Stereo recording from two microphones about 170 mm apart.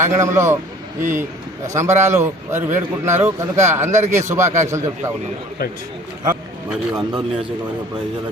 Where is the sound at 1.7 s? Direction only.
15° right (ahead or behind).